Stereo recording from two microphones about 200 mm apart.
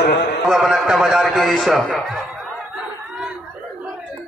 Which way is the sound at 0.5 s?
Centre (ahead or behind).